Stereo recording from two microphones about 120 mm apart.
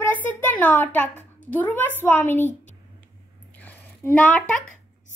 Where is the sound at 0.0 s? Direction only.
15° left (ahead or behind).